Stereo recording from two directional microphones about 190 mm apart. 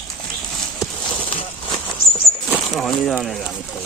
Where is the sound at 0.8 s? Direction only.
25° left (ahead or behind).